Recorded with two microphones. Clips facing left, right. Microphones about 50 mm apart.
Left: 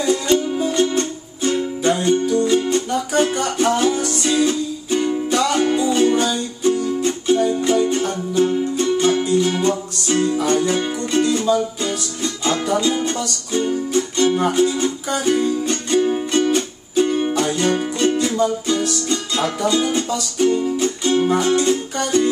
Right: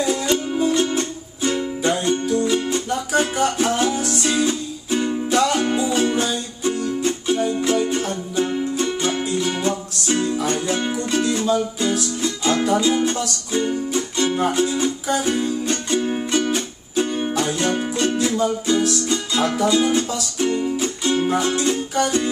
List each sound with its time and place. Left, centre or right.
0.3 s music: centre